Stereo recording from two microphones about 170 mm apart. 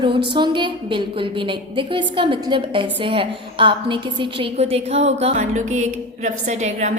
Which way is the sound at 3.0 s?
30° right (ahead or behind).